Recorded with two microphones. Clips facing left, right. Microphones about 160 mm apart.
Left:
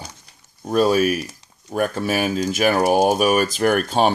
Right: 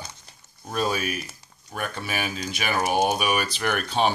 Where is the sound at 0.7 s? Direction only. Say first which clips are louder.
Left 10 dB; 40° left (ahead or behind).